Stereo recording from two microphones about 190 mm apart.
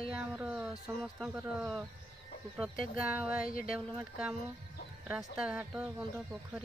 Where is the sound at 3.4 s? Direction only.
45° left (ahead or behind).